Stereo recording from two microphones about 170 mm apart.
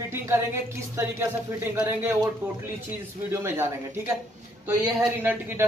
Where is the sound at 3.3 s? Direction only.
15° right (ahead or behind).